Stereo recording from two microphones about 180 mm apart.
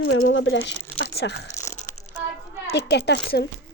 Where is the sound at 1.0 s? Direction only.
70° left (ahead or behind).